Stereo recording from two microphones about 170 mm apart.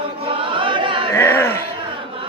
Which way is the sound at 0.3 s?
30° right (ahead or behind).